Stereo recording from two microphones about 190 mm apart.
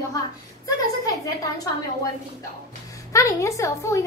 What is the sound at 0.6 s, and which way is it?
Speech, 20° left (ahead or behind).